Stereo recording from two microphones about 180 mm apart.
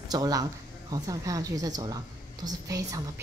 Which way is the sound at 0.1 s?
20° right (ahead or behind).